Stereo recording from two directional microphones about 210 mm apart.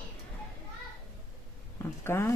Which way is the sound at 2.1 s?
10° left (ahead or behind).